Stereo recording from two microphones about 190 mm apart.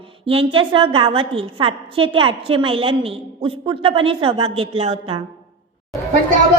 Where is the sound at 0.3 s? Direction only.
30° right (ahead or behind).